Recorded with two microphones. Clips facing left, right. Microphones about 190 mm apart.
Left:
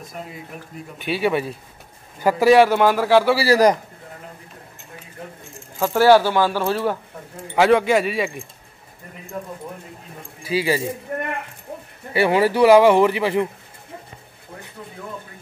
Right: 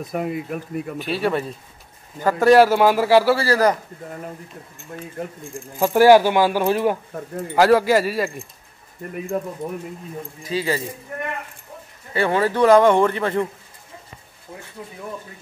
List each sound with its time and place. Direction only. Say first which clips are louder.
0.1 s speech: right 12 dB; 60° right (ahead or behind)
0.9 s a man's voice: left 2 dB; centre (ahead or behind)
3.3 s a man's voice: left 3 dB; 15° left (ahead or behind)
5.8 s speech: right 2 dB; 15° right (ahead or behind)
7.5 s a man's voice: right 1 dB; centre (ahead or behind)
10.4 s a man's voice: left 3 dB; 10° left (ahead or behind)
12.1 s a man's voice: left 2 dB; 10° left (ahead or behind)